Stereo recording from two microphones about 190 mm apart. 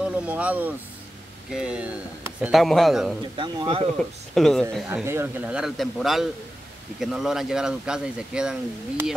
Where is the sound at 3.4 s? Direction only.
25° right (ahead or behind).